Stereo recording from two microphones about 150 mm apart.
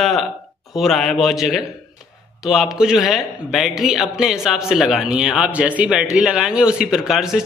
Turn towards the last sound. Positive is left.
turn(degrees=-5)  # may be behind; listen again after turning